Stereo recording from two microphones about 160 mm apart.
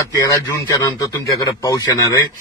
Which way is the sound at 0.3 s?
20° left (ahead or behind).